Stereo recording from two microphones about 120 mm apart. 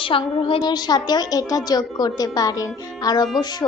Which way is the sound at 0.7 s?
35° left (ahead or behind).